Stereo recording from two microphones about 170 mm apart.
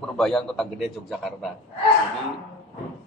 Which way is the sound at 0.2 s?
5° left (ahead or behind).